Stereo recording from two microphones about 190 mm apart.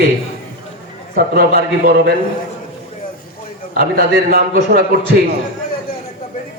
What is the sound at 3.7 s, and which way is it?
Speech, 50° right (ahead or behind).